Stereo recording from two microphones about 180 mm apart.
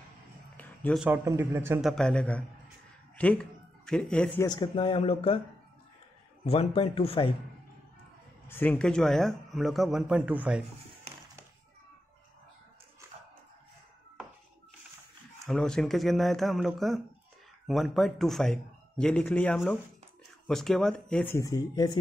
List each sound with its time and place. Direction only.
0.6 s a sound: 10° left (ahead or behind)
1.0 s a man's voice: 15° right (ahead or behind)
1.8 s a man's voice: centre (ahead or behind)
4.5 s speech: 25° left (ahead or behind)
6.4 s speech: 30° left (ahead or behind)
8.5 s a man's voice: 10° left (ahead or behind); by 10.6 s 10° right (ahead or behind)
15.4 s a man's voice: 5° left (ahead or behind); by 21.9 s 20° left (ahead or behind)